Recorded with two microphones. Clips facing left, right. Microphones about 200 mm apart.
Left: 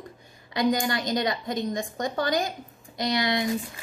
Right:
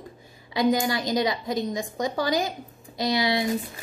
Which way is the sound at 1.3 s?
Centre (ahead or behind).